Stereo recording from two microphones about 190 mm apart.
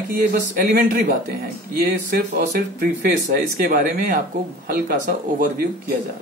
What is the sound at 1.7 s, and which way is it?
Speech, 55° right (ahead or behind).